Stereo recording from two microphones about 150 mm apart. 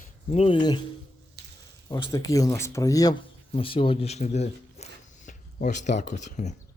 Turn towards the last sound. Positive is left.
turn(degrees=55)  # may be behind; listen again after turning